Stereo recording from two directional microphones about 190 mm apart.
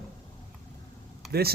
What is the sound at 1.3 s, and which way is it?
Speech, 55° right (ahead or behind).